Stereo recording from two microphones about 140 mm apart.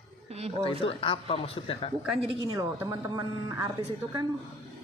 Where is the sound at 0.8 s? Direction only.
40° left (ahead or behind).